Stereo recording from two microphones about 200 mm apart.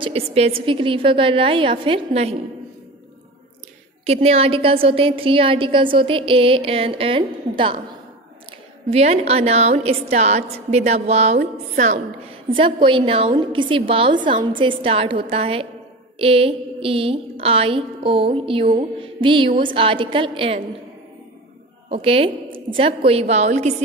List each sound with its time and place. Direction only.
0.0 s a woman's voice: 30° right (ahead or behind)
4.0 s a woman's voice: 30° right (ahead or behind)
8.9 s a woman's voice: 30° right (ahead or behind)
12.4 s a woman's voice: 25° right (ahead or behind)
21.8 s a woman's voice: 30° right (ahead or behind)